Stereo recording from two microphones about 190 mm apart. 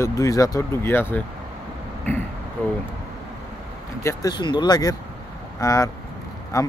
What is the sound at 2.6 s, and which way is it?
Vehicle, 10° left (ahead or behind).